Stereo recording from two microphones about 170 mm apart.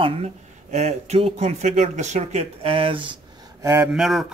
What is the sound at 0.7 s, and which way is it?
Speech, 40° right (ahead or behind).